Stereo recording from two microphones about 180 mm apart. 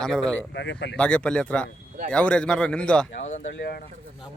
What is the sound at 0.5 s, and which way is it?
Speech, 80° left.